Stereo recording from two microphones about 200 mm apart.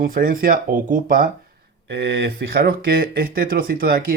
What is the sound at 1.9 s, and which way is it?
Speech, 60° right (ahead or behind).